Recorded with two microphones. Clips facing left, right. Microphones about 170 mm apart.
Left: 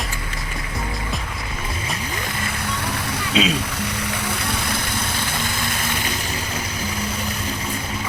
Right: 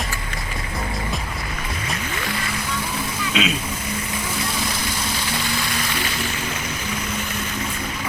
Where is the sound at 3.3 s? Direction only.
35° left (ahead or behind).